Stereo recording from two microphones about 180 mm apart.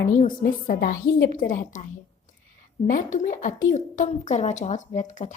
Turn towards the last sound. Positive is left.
turn(degrees=40)  # may be behind; listen again after turning